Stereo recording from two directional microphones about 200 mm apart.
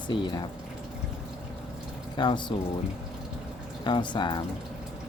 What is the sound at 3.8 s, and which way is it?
Speech, 20° left (ahead or behind).